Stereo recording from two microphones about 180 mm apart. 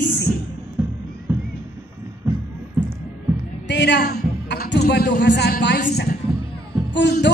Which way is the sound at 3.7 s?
70° left (ahead or behind).